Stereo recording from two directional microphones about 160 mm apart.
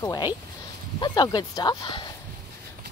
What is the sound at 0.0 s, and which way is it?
Speech, 25° left (ahead or behind).